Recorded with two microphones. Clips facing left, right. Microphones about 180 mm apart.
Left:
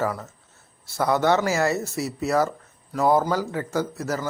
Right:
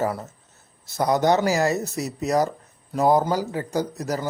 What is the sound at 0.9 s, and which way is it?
A man's voice, 20° right (ahead or behind).